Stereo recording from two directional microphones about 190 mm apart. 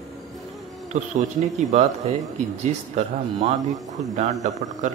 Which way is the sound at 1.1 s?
40° right (ahead or behind).